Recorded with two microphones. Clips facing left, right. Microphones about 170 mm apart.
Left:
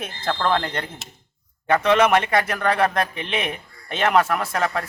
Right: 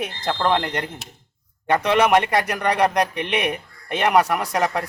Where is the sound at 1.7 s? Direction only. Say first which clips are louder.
Even; 15° right (ahead or behind).